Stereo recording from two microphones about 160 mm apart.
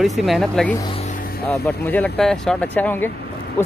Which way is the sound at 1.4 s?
15° left (ahead or behind).